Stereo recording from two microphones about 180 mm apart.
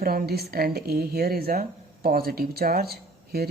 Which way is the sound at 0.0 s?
55° right (ahead or behind).